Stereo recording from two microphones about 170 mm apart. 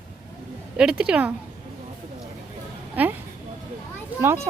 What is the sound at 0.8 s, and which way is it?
Speech, 5° right (ahead or behind).